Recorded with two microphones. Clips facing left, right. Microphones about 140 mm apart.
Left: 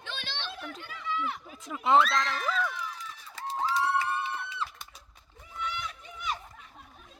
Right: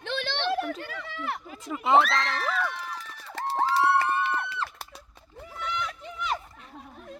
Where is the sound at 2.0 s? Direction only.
65° right (ahead or behind).